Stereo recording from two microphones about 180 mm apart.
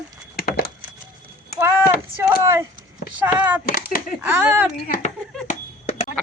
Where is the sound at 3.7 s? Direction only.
55° left (ahead or behind).